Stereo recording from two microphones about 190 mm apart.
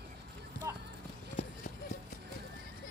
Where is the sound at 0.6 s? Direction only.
15° right (ahead or behind).